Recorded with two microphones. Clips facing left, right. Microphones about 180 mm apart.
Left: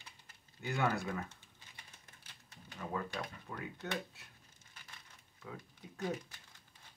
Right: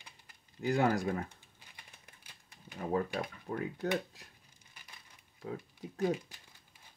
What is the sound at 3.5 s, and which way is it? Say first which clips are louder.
Speech: right 9 dB; 30° right (ahead or behind).